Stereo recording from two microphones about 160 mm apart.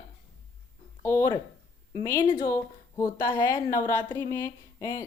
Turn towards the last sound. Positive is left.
turn(degrees=15)  # may be behind; listen again after turning